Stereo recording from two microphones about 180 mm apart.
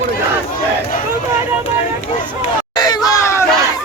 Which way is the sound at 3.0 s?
15° left (ahead or behind).